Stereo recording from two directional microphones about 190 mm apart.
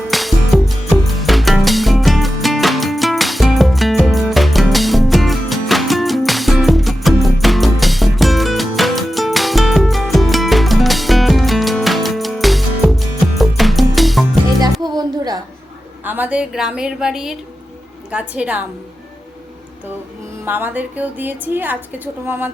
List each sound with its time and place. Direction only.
0.1 s music: centre (ahead or behind)
14.6 s music: 20° right (ahead or behind)
16.0 s a woman's voice: 10° right (ahead or behind)
20.4 s a woman's voice: 10° right (ahead or behind)